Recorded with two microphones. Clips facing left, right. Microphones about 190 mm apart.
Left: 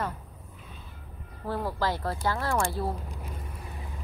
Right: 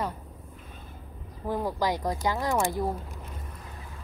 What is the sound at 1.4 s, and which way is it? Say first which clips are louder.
Speech: right 2 dB; 15° right (ahead or behind).